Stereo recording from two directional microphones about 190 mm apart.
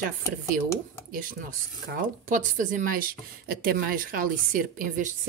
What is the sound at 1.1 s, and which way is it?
Speech, 45° right (ahead or behind).